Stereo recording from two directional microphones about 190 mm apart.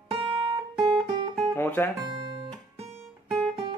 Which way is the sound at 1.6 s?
10° left (ahead or behind).